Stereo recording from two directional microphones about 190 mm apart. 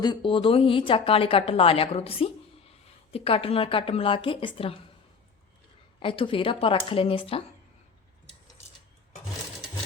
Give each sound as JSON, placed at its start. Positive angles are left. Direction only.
{"t": 0.0, "sound": "a woman's voice", "side_deg": 25}
{"t": 6.0, "sound": "a woman's voice", "side_deg": 25}